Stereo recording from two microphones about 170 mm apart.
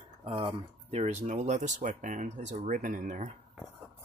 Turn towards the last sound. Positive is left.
turn(degrees=-45)  # may be behind; listen again after turning